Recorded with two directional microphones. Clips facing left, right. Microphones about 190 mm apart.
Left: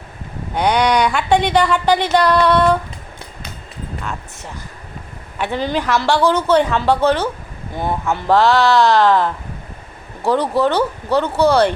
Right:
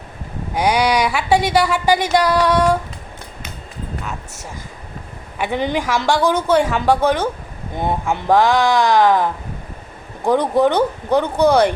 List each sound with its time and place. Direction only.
0.5 s speech: 10° right (ahead or behind)
5.4 s speech: 15° right (ahead or behind)